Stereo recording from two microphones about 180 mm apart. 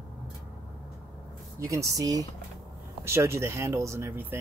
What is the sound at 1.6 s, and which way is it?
Speech, 20° right (ahead or behind).